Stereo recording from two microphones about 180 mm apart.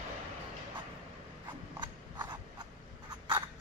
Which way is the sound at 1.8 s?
25° right (ahead or behind).